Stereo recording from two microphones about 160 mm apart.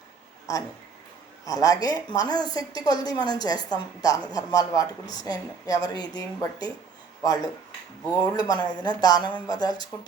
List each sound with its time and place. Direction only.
0.5 s a woman's voice: 25° left (ahead or behind)